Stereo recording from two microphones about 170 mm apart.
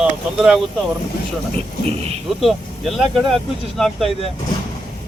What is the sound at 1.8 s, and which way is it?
Speech, 35° right (ahead or behind).